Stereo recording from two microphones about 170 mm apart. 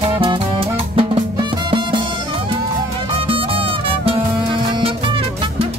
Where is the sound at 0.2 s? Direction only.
30° right (ahead or behind).